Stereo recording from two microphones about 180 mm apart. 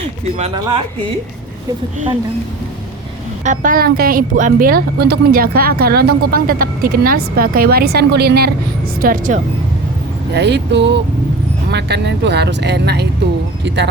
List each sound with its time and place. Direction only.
3.4 s speech: 45° right (ahead or behind); by 8.4 s 65° right (ahead or behind)
9.0 s speech: 50° right (ahead or behind)
10.3 s speech: 70° right (ahead or behind)